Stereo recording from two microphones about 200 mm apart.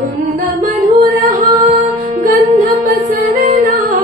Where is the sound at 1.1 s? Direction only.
15° right (ahead or behind).